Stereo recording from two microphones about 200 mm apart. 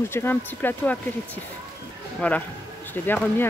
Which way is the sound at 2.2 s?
5° left (ahead or behind).